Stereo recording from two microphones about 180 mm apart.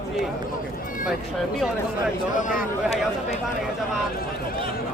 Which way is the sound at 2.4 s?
40° left (ahead or behind).